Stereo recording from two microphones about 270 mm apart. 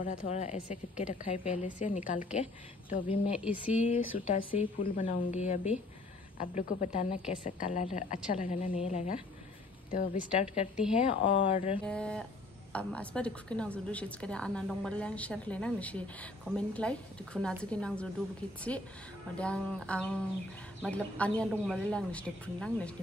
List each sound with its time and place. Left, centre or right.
0.0 s a woman's voice: left
3.3 s a woman's voice: centre
3.7 s a woman's voice: left
11.8 s a woman's voice: centre
19.3 s a woman's voice: centre